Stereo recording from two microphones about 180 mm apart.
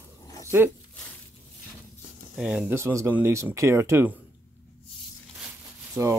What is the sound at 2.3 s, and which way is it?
Speech, 5° right (ahead or behind).